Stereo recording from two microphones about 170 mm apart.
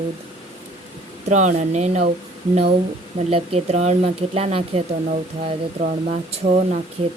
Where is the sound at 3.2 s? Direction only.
35° right (ahead or behind).